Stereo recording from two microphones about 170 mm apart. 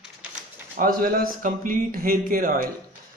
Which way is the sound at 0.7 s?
55° right (ahead or behind).